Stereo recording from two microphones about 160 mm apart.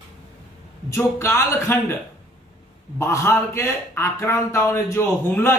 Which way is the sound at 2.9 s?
15° left (ahead or behind).